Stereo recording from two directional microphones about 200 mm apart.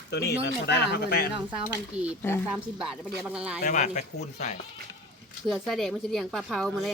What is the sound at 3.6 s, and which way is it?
Speech, 40° left (ahead or behind).